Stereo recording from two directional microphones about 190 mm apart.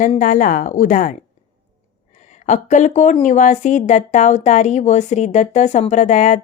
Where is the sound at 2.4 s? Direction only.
40° left (ahead or behind).